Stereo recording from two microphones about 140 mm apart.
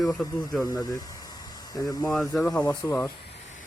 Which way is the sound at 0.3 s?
25° left (ahead or behind).